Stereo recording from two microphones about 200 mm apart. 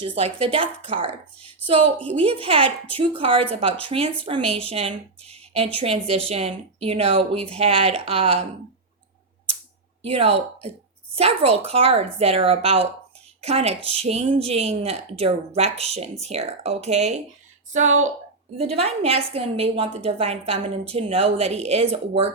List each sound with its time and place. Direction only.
0.0 s a woman's voice: 30° right (ahead or behind)
10.0 s a woman's voice: 30° right (ahead or behind)
17.8 s a woman's voice: 90° right
18.5 s a woman's voice: 30° right (ahead or behind)